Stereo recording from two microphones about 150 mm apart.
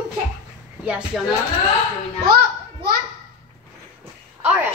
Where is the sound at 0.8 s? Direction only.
10° right (ahead or behind).